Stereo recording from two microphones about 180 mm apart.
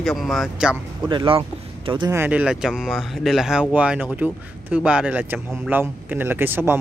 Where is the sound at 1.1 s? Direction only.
30° right (ahead or behind).